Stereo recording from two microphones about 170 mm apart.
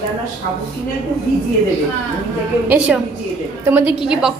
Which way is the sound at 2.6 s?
5° right (ahead or behind).